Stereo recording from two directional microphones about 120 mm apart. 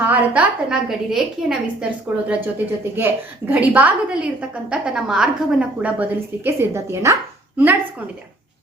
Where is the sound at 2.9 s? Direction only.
15° right (ahead or behind).